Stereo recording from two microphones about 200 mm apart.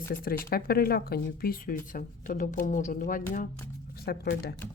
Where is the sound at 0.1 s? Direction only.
45° left (ahead or behind).